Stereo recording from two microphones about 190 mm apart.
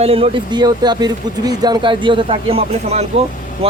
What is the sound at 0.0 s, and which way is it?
Speech, 30° right (ahead or behind).